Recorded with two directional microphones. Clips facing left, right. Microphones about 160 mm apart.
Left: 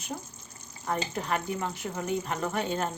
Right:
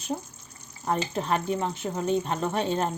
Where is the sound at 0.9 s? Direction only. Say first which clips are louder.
Right 4 dB; 30° right (ahead or behind).